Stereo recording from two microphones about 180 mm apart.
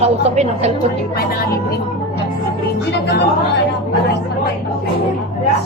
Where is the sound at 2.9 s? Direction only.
70° left (ahead or behind).